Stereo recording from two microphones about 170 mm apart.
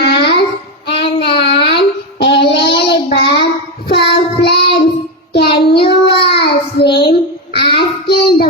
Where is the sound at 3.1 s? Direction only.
80° left.